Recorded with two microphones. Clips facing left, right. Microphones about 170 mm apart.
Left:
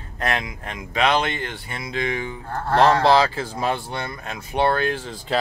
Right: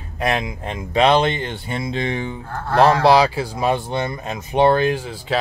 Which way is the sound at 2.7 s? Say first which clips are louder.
Right 2 dB; 10° right (ahead or behind).